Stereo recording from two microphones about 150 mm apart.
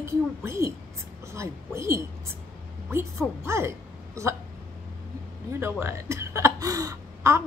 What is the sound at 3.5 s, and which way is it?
Hiccup, 20° right (ahead or behind).